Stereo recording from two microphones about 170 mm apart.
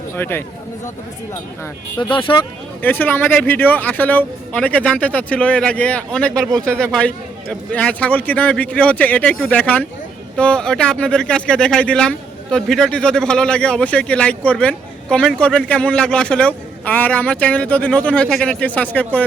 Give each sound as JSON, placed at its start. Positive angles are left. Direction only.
{"t": 0.2, "sound": "speech", "side_deg": 15}
{"t": 2.0, "sound": "speech", "side_deg": 30}
{"t": 2.8, "sound": "speech", "side_deg": 10}